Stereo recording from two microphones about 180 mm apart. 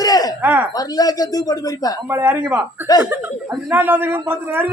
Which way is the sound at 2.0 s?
10° right (ahead or behind).